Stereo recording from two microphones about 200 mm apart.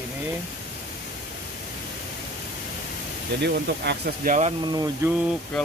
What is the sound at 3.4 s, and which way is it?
Speech, 55° right (ahead or behind).